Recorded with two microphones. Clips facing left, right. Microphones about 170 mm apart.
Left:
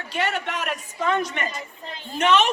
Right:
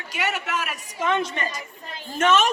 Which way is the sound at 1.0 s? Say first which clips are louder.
Even; 25° right (ahead or behind).